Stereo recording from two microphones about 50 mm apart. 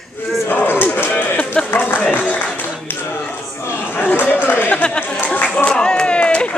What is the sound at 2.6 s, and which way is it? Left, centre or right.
Clapping, left.